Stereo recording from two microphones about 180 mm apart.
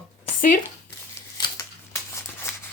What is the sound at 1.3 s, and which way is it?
Scissors, 25° left (ahead or behind).